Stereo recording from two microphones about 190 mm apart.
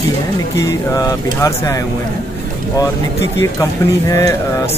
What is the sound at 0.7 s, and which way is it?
Speech, 20° left (ahead or behind).